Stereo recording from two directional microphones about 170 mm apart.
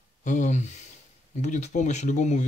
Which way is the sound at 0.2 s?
45° left (ahead or behind).